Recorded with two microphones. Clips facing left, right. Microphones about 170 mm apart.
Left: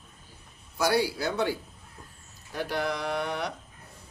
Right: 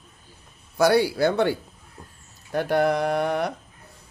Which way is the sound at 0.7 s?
65° right (ahead or behind).